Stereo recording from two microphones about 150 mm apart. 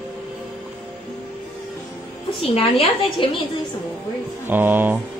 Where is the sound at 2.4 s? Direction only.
35° left (ahead or behind).